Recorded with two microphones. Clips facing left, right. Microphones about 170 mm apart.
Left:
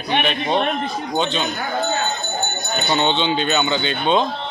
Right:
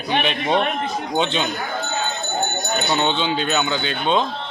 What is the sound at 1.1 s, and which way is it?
Speech, 20° right (ahead or behind).